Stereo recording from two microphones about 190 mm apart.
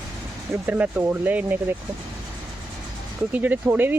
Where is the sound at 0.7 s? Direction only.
10° right (ahead or behind).